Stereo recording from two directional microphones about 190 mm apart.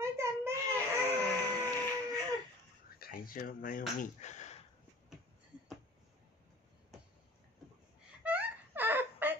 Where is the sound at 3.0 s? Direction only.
50° left (ahead or behind).